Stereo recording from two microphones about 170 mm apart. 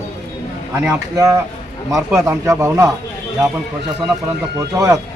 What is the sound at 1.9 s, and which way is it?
A man's voice, 15° right (ahead or behind).